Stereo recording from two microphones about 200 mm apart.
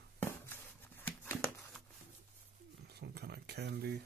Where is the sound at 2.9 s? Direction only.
55° right (ahead or behind).